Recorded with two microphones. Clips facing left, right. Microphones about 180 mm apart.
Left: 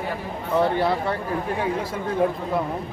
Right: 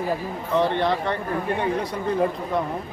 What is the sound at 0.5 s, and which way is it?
Speech, 5° left (ahead or behind).